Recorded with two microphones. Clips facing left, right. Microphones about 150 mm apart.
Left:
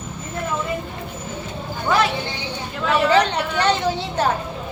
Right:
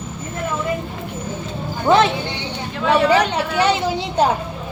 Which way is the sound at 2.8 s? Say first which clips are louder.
Right 3 dB; centre (ahead or behind).